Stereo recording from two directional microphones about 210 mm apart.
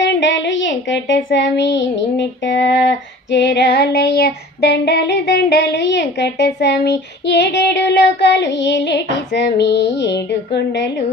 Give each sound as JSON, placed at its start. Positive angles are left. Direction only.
{"t": 0.0, "sound": "speech", "side_deg": 60}